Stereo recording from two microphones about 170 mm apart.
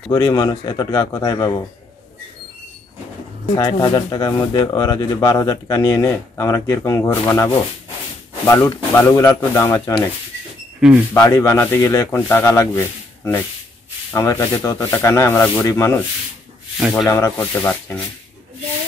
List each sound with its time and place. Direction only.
0.1 s speech: 25° left (ahead or behind)
3.5 s speech: 25° left (ahead or behind)
10.8 s speech: 5° right (ahead or behind)
11.1 s speech: 20° left (ahead or behind)
17.1 s speech: 15° left (ahead or behind)